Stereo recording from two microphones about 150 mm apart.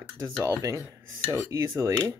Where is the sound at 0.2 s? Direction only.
20° right (ahead or behind).